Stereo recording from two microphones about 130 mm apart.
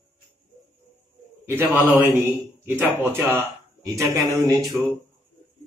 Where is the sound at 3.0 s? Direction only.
15° right (ahead or behind).